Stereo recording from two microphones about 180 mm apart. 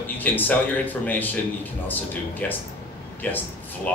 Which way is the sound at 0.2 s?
10° left (ahead or behind).